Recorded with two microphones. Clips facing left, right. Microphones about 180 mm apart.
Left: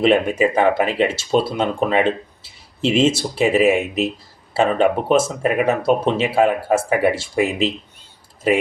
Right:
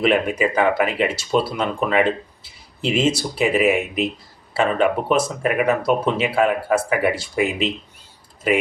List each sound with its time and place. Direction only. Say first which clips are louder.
0.0 s speech: left 3 dB; 30° left (ahead or behind)